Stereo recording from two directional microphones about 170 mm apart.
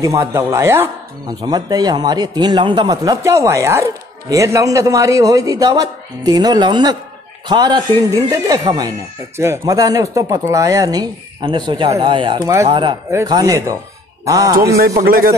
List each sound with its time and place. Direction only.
0.0 s speech: 15° right (ahead or behind)
15.0 s speech: 60° right (ahead or behind)